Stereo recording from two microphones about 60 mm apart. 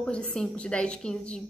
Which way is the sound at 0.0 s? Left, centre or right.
Centre.